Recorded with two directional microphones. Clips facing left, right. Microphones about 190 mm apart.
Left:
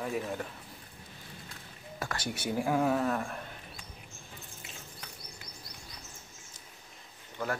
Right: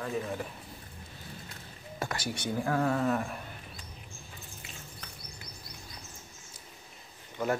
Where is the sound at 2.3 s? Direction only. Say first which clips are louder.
Left 2 dB; 10° left (ahead or behind).